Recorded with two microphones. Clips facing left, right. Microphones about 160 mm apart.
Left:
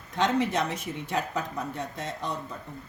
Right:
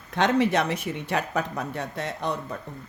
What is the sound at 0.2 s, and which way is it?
Speech, 70° right (ahead or behind).